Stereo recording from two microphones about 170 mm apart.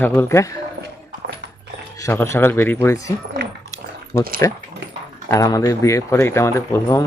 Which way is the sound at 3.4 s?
80° right.